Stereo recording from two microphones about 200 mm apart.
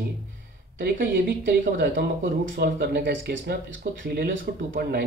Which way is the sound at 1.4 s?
65° right (ahead or behind).